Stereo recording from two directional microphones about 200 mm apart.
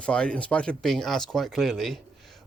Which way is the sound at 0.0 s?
5° left (ahead or behind).